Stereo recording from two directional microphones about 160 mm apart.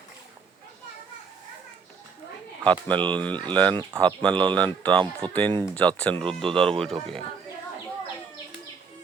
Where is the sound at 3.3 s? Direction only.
30° right (ahead or behind).